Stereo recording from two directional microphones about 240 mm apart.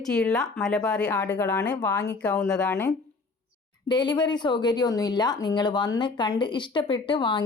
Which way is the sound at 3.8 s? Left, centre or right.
Centre.